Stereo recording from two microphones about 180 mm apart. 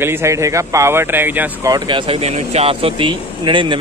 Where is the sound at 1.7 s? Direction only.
25° right (ahead or behind).